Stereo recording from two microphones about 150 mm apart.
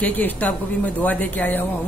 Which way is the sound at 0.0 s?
10° left (ahead or behind).